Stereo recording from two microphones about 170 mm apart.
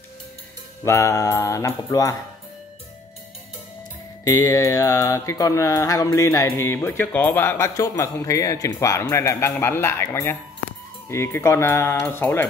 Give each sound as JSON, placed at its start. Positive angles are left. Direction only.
{"t": 0.8, "sound": "mantra", "side_deg": 20}
{"t": 4.2, "sound": "mantra", "side_deg": 20}
{"t": 9.0, "sound": "speech", "side_deg": 15}